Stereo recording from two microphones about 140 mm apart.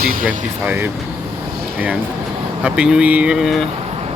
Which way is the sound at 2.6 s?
5° right (ahead or behind).